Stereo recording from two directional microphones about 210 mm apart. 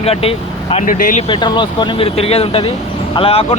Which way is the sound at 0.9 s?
40° left (ahead or behind).